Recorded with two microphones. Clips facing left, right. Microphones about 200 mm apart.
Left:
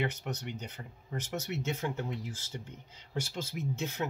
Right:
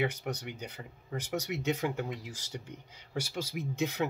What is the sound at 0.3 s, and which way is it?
Speech, 10° right (ahead or behind).